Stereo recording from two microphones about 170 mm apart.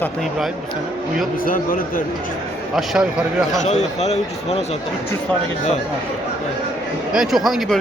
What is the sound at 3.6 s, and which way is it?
Speech, 40° left (ahead or behind).